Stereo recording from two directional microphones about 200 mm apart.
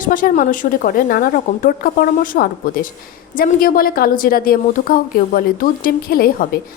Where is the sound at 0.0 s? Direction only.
45° left (ahead or behind).